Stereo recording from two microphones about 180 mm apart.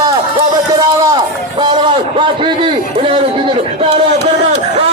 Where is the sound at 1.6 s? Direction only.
25° right (ahead or behind).